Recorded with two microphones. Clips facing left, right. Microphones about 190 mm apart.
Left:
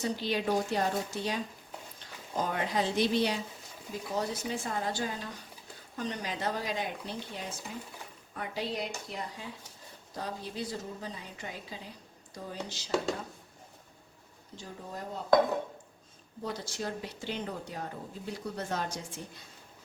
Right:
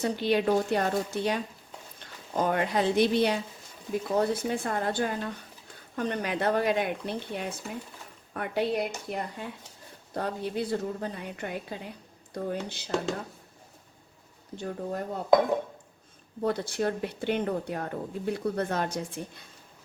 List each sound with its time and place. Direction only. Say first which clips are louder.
0.0 s speech: right 6 dB; 60° right (ahead or behind)
14.5 s speech: right 10 dB; 60° right (ahead or behind)
16.4 s speech: right 9 dB; 60° right (ahead or behind)